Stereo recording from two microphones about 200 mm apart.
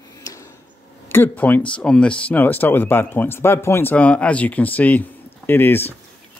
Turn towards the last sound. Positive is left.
turn(degrees=10)  # may be behind; listen again after turning